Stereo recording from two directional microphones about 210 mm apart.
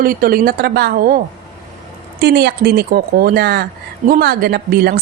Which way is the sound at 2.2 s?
50° right (ahead or behind).